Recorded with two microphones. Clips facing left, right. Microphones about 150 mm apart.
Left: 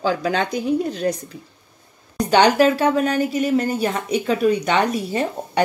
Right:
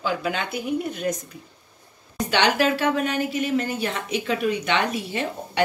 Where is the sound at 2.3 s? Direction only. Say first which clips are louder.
Left 6 dB; 40° left (ahead or behind).